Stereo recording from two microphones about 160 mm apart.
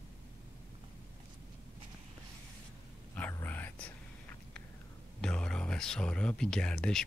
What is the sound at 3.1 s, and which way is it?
Whispering, 10° left (ahead or behind).